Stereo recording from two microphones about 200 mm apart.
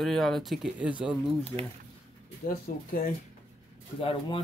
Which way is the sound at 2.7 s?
40° left (ahead or behind).